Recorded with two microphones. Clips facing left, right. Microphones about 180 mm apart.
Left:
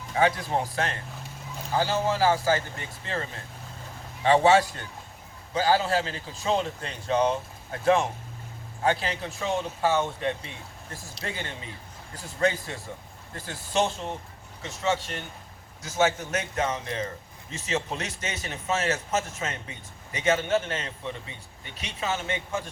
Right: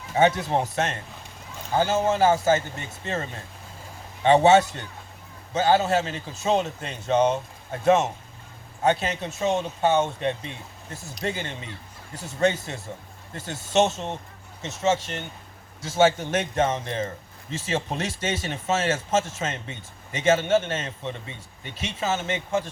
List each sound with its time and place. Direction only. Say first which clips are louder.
0.1 s a man's voice: right 4 dB; 25° right (ahead or behind)